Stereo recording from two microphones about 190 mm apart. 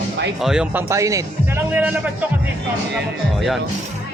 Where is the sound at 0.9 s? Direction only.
15° right (ahead or behind).